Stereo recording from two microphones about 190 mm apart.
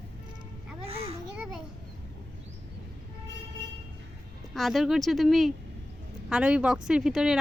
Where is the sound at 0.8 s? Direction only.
30° right (ahead or behind).